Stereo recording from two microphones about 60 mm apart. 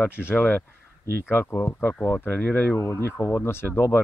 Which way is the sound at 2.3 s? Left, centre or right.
Left.